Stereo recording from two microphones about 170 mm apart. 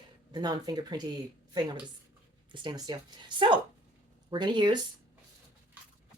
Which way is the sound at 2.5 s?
25° right (ahead or behind).